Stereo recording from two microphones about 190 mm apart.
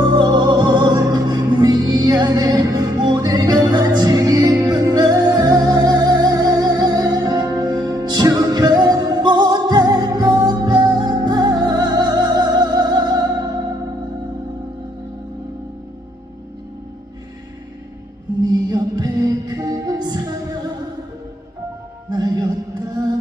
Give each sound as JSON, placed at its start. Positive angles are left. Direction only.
{"t": 0.0, "sound": "music", "side_deg": -20}
{"t": 18.4, "sound": "music", "side_deg": -20}
{"t": 22.1, "sound": "music", "side_deg": -25}